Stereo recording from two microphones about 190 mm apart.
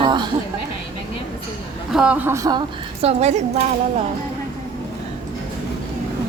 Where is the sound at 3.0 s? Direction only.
30° right (ahead or behind).